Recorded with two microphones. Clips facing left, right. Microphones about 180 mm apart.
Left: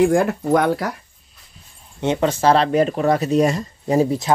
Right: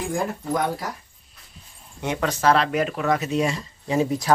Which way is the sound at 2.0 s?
25° left (ahead or behind).